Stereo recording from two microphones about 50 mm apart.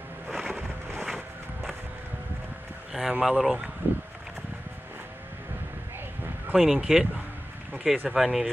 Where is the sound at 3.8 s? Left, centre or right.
Right.